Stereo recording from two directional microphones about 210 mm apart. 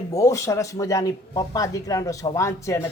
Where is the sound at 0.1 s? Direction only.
15° left (ahead or behind).